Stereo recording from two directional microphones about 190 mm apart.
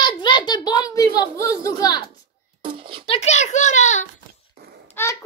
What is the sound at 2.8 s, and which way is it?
Speech, 25° right (ahead or behind).